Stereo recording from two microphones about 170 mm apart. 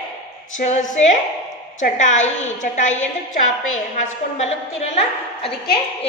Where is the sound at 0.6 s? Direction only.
45° left (ahead or behind).